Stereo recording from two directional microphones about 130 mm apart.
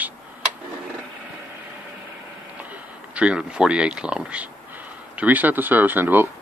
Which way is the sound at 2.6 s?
10° right (ahead or behind).